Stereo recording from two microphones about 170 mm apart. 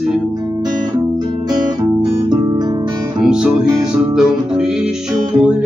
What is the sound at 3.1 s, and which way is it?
Music, 5° right (ahead or behind).